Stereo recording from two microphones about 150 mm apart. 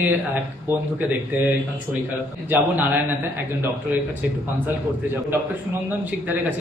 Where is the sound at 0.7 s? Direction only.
15° right (ahead or behind).